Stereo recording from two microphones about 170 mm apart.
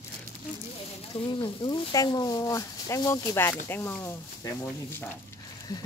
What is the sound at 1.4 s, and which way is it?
Speech, 30° left (ahead or behind).